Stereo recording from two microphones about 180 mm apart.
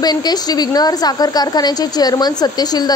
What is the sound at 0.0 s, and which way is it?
A woman's voice, 20° left (ahead or behind).